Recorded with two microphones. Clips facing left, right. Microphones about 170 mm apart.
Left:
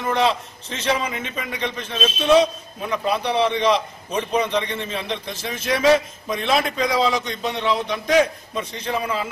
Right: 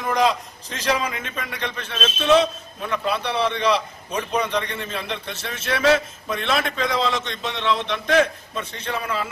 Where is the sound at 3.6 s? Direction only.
30° left (ahead or behind).